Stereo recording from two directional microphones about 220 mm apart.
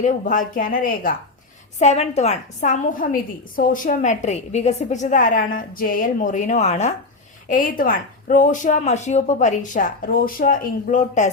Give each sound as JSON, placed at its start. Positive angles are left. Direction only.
{"t": 0.0, "sound": "a woman's voice", "side_deg": 35}